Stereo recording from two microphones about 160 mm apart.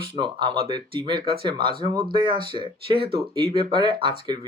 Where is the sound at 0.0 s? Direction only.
30° right (ahead or behind).